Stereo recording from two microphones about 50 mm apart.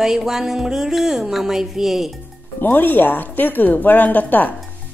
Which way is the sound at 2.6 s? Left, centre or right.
Left.